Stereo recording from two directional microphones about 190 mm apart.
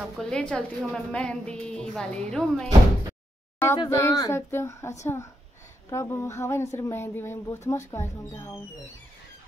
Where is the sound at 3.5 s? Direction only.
15° left (ahead or behind).